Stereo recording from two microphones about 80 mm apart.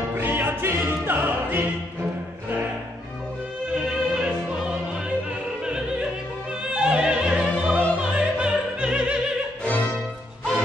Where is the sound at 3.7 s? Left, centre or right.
Centre.